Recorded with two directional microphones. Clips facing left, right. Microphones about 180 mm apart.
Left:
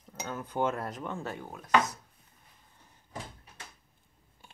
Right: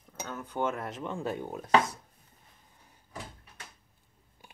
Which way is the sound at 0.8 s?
25° right (ahead or behind).